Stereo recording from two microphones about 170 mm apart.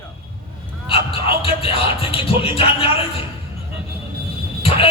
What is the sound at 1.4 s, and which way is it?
Music, 35° left (ahead or behind).